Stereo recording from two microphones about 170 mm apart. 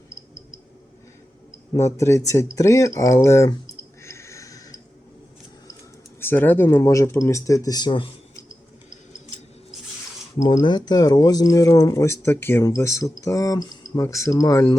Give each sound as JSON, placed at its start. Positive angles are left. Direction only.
{"t": 1.7, "sound": "speech", "side_deg": 15}
{"t": 4.0, "sound": "a sound", "side_deg": 15}
{"t": 6.1, "sound": "speech", "side_deg": 10}
{"t": 10.4, "sound": "speech", "side_deg": 25}